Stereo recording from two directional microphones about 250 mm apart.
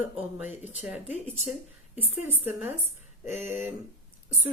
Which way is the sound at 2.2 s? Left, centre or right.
Centre.